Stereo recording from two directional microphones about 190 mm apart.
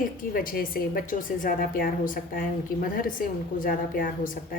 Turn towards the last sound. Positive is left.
turn(degrees=45)  # may be behind; listen again after turning